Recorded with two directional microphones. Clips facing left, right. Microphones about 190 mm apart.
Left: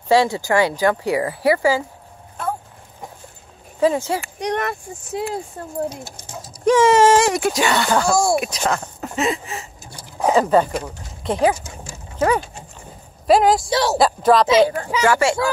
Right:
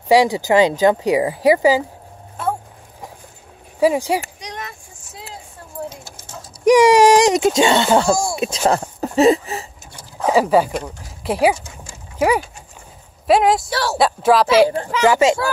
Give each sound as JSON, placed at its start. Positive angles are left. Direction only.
{"t": 0.1, "sound": "speech", "side_deg": -15}
{"t": 3.8, "sound": "speech", "side_deg": -15}
{"t": 4.4, "sound": "speech", "side_deg": 60}
{"t": 6.6, "sound": "speech", "side_deg": -15}
{"t": 10.3, "sound": "speech", "side_deg": -5}
{"t": 13.3, "sound": "speech", "side_deg": 0}
{"t": 13.7, "sound": "speech", "side_deg": 20}
{"t": 13.9, "sound": "speech", "side_deg": -5}
{"t": 15.0, "sound": "speech", "side_deg": -20}